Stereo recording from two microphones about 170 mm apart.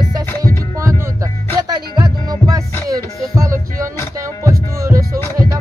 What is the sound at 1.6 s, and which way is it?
Music, 25° right (ahead or behind).